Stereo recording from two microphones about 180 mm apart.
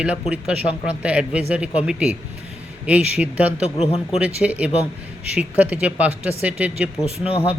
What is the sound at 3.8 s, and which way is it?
Speech, 35° left (ahead or behind).